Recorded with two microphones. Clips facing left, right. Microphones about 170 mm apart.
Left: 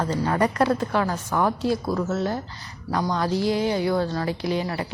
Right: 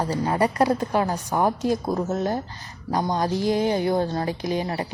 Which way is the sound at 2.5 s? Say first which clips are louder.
Right 1 dB; 45° right (ahead or behind).